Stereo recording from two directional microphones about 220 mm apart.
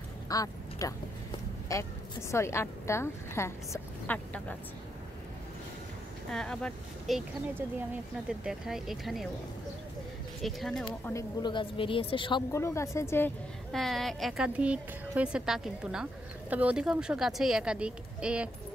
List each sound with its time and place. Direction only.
0.3 s a sound: 15° left (ahead or behind)
1.7 s a woman's voice: 15° left (ahead or behind)
6.3 s a woman's voice: 5° left (ahead or behind)
10.4 s a woman's voice: centre (ahead or behind)
11.1 s a woman's voice: 15° left (ahead or behind); by 18.5 s 5° right (ahead or behind)